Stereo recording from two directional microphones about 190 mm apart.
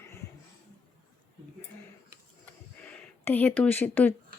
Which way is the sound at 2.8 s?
10° left (ahead or behind).